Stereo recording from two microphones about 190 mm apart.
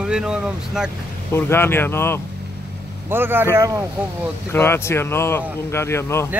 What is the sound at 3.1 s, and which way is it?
Speech, 10° right (ahead or behind).